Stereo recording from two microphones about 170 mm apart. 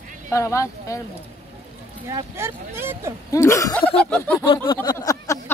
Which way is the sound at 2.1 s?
15° right (ahead or behind).